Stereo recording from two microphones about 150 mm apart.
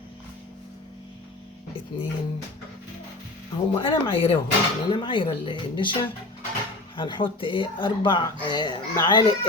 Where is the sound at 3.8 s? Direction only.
35° left (ahead or behind).